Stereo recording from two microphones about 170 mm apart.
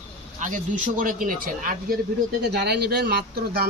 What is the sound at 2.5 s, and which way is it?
Speech, 70° right (ahead or behind).